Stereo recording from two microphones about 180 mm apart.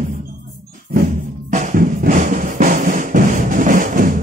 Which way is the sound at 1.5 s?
45° right (ahead or behind).